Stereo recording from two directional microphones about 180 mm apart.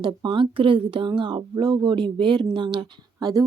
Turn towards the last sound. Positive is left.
turn(degrees=-20)  # may be behind; listen again after turning